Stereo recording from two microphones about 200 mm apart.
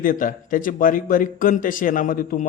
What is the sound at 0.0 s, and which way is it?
A man's voice, 45° left (ahead or behind).